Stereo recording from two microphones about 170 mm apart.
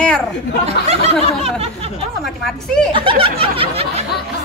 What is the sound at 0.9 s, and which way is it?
Snicker, 40° right (ahead or behind).